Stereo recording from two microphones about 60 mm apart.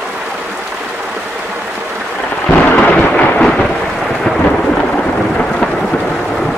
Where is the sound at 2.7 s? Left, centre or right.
Left.